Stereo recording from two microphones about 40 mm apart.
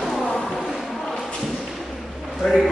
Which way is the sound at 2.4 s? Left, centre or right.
Centre.